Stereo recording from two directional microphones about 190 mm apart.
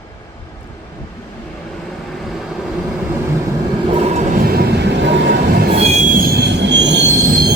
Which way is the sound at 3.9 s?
35° right (ahead or behind).